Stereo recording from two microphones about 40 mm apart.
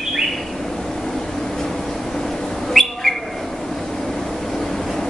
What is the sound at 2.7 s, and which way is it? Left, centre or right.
Bird, centre.